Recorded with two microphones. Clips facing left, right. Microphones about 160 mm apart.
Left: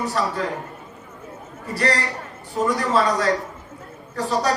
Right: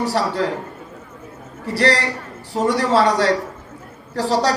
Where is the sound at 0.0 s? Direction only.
75° right (ahead or behind).